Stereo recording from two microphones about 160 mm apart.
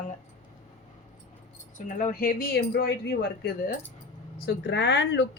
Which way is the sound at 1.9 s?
55° left (ahead or behind).